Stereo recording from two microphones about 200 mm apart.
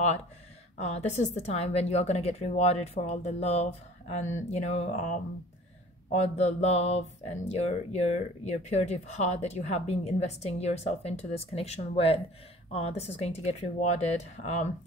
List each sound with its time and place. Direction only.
0.7 s speech: 35° left (ahead or behind)